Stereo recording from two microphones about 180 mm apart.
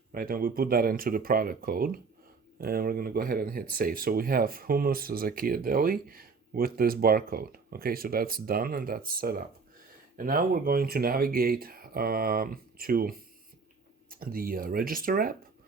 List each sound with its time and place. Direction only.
0.1 s speech: 55° right (ahead or behind)